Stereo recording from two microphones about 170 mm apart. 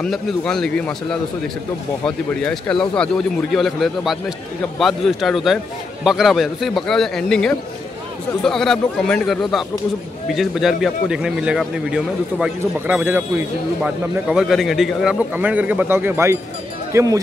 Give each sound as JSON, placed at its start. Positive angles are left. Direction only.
{"t": 0.0, "sound": "speech", "side_deg": 5}
{"t": 2.0, "sound": "speech", "side_deg": 5}